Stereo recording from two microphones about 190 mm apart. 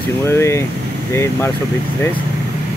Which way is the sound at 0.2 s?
15° left (ahead or behind).